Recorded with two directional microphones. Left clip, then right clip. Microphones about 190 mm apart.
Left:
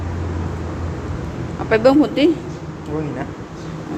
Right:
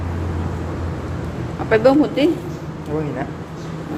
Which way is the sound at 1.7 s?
15° left (ahead or behind).